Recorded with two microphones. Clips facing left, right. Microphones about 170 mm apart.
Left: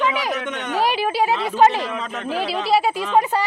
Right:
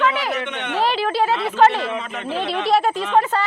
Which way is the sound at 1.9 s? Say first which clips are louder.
Even; centre (ahead or behind).